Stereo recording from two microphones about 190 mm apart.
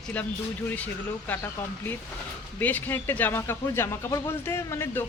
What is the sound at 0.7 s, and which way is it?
Speech, 10° left (ahead or behind).